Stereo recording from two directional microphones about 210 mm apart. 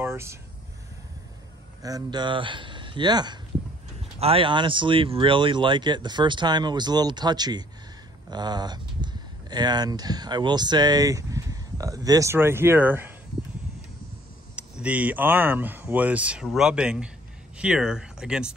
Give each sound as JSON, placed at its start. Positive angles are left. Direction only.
{"t": 0.0, "sound": "speech", "side_deg": -10}
{"t": 1.8, "sound": "speech", "side_deg": -15}
{"t": 14.5, "sound": "speech", "side_deg": -5}